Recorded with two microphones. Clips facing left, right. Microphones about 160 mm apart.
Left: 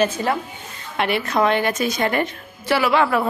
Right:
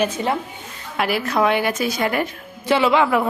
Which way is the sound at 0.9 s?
5° right (ahead or behind).